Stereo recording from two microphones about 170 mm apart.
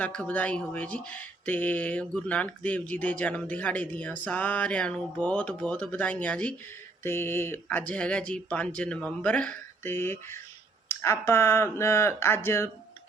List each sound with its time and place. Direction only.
0.0 s speech: 10° left (ahead or behind)